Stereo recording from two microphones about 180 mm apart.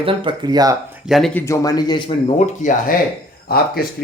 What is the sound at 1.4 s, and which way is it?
Speech, 15° left (ahead or behind).